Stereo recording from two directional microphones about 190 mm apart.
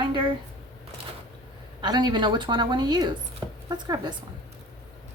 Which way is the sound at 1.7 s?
25° right (ahead or behind).